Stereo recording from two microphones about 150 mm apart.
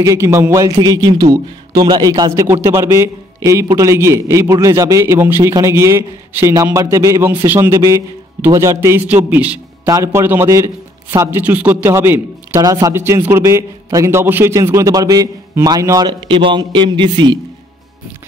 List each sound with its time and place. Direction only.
0.0 s a man's voice: 20° right (ahead or behind)
9.8 s a man's voice: 20° right (ahead or behind)